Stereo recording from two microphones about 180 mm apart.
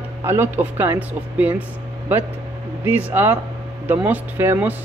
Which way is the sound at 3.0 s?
10° right (ahead or behind).